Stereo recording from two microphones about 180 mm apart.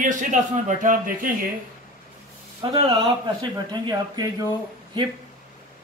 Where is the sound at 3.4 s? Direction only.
25° right (ahead or behind).